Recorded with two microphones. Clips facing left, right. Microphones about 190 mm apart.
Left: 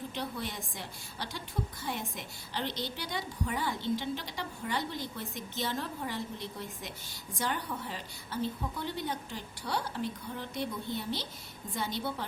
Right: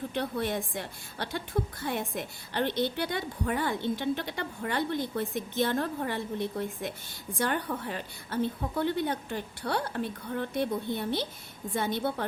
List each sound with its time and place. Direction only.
0.1 s a woman's voice: 55° right (ahead or behind)